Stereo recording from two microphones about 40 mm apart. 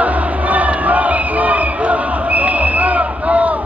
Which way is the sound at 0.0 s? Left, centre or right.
Right.